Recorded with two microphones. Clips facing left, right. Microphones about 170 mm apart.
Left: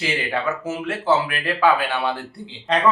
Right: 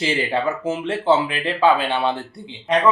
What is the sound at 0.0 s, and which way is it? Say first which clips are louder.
Speech: right 3 dB; 30° right (ahead or behind).